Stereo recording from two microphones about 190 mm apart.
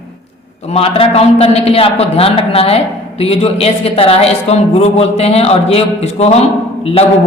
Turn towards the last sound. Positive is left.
turn(degrees=30)  # may be behind; listen again after turning